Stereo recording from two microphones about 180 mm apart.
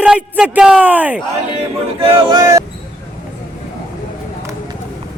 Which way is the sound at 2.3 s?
20° right (ahead or behind).